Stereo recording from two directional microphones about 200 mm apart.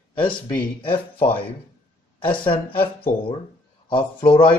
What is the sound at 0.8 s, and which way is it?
Speech, 25° left (ahead or behind).